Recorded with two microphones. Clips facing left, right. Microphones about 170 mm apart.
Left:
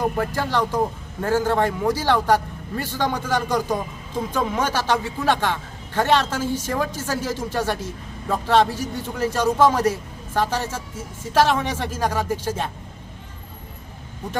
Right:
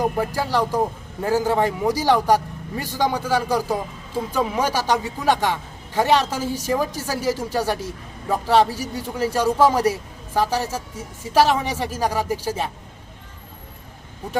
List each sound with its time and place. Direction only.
0.3 s a man's voice: 10° right (ahead or behind)
6.4 s a woman's voice: 35° right (ahead or behind)
6.7 s a man's voice: 10° right (ahead or behind)